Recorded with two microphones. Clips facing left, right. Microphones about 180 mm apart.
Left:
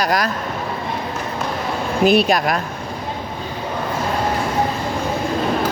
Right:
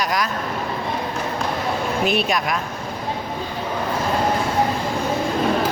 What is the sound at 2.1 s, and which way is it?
Speech, 35° left (ahead or behind).